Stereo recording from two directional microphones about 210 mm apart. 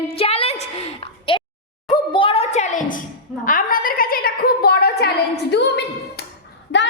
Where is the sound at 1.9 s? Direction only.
25° left (ahead or behind); by 5.1 s 50° left (ahead or behind).